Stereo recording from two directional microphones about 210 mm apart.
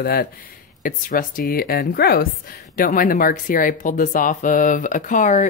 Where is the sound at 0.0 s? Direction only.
45° left (ahead or behind).